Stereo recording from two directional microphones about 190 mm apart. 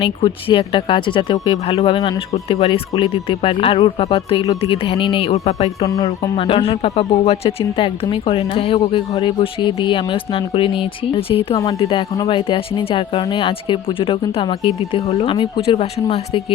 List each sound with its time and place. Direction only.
0.0 s speech: 30° left (ahead or behind)
5.8 s speech: 20° left (ahead or behind)
6.3 s speech: 30° left (ahead or behind)